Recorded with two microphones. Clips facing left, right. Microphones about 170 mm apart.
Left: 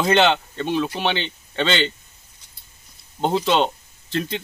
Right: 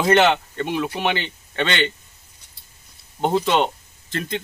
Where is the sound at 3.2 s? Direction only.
5° right (ahead or behind).